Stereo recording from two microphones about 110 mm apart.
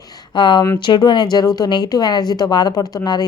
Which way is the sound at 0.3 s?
45° left (ahead or behind).